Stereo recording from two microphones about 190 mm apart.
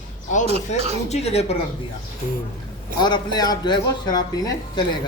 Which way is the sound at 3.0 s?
20° left (ahead or behind).